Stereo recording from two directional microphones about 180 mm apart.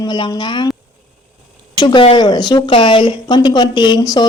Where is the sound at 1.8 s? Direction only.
25° left (ahead or behind).